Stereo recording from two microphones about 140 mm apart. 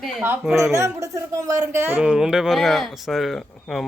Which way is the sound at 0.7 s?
25° right (ahead or behind).